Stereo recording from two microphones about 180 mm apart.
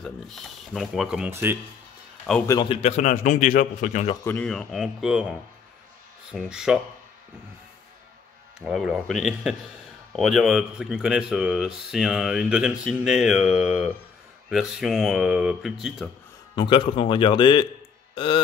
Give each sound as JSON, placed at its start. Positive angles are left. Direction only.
{"t": 0.0, "sound": "speech", "side_deg": 0}
{"t": 2.4, "sound": "a man's voice", "side_deg": 20}
{"t": 2.7, "sound": "a man's voice", "side_deg": 35}
{"t": 4.2, "sound": "speech", "side_deg": 10}
{"t": 8.5, "sound": "speech", "side_deg": 0}
{"t": 16.5, "sound": "speech", "side_deg": 25}